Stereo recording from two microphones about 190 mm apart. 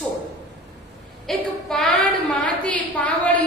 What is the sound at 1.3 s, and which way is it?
A woman's voice, centre (ahead or behind).